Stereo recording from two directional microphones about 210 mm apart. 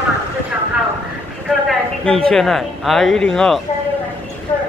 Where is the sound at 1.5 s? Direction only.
5° left (ahead or behind).